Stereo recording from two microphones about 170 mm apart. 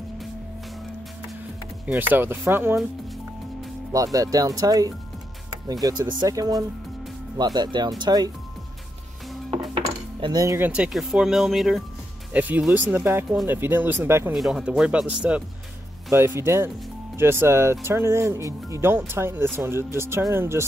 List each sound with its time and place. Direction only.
1.9 s speech: 10° right (ahead or behind)
3.9 s speech: 20° right (ahead or behind)
9.8 s cutlery: 25° right (ahead or behind)
10.7 s speech: 5° right (ahead or behind)
14.3 s speech: centre (ahead or behind)